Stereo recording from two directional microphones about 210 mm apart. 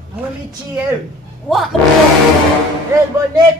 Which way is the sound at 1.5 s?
Centre (ahead or behind).